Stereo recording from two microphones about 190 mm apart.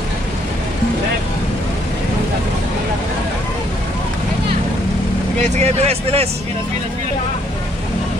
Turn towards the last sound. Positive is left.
turn(degrees=-35)  # may be behind; listen again after turning